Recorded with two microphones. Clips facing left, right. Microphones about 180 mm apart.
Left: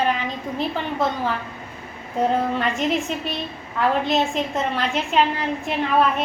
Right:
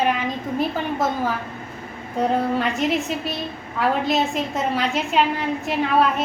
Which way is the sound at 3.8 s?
5° right (ahead or behind).